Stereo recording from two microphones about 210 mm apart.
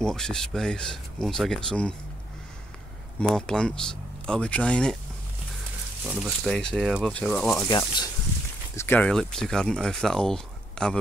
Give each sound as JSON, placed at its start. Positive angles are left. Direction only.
{"t": 0.0, "sound": "speech", "side_deg": 5}
{"t": 3.2, "sound": "speech", "side_deg": 5}
{"t": 6.0, "sound": "speech", "side_deg": -5}
{"t": 7.6, "sound": "speech", "side_deg": 20}